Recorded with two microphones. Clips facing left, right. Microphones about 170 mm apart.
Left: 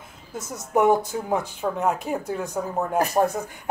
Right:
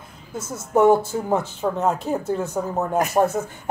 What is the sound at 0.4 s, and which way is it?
Speech, 15° left (ahead or behind).